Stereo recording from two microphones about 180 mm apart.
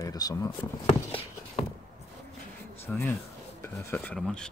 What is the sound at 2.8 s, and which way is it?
Speech, 15° left (ahead or behind).